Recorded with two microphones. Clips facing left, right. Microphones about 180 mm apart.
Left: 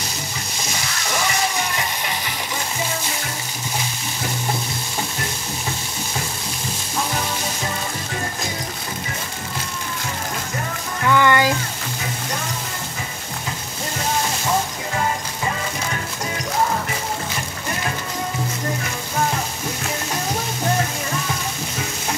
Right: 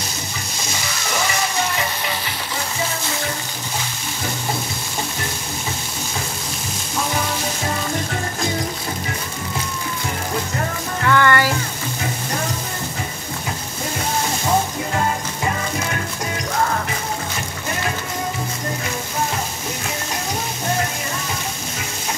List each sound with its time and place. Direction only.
11.1 s frying: 15° left (ahead or behind)